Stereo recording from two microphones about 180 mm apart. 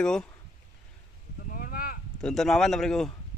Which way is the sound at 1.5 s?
55° left (ahead or behind).